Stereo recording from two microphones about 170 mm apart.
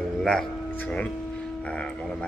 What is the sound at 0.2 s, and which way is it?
A man's voice, 5° left (ahead or behind).